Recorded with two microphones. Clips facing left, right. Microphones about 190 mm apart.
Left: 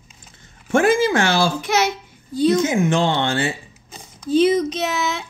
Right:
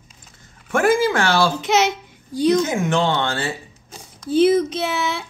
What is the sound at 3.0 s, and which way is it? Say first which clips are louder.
Speech: left 1 dB; 25° left (ahead or behind).